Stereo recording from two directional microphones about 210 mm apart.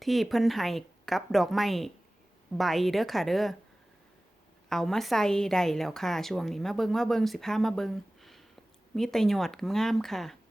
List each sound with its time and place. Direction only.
0.0 s a woman's voice: centre (ahead or behind)
4.7 s a woman's voice: centre (ahead or behind)